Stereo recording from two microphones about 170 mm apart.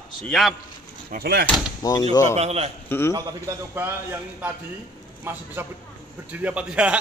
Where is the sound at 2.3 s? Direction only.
40° right (ahead or behind).